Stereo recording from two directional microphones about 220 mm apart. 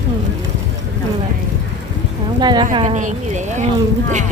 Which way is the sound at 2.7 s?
30° right (ahead or behind).